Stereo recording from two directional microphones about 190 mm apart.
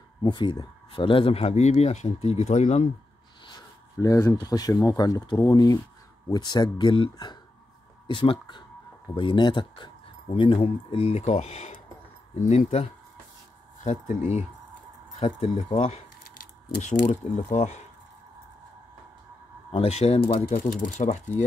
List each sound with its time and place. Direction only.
0.2 s speech: 25° left (ahead or behind)
3.4 s speech: 20° left (ahead or behind); by 17.8 s 35° left (ahead or behind)
19.7 s speech: 30° left (ahead or behind)